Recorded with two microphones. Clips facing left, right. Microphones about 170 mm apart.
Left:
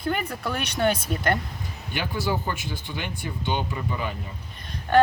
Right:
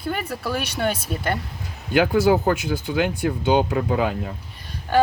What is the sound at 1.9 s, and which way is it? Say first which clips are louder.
Speech: right 11 dB; 90° right.